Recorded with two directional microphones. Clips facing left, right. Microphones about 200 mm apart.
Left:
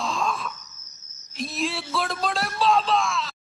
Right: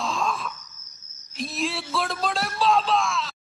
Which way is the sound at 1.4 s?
Centre (ahead or behind).